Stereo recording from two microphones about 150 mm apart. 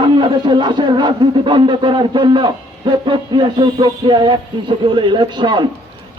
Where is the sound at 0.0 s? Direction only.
30° right (ahead or behind).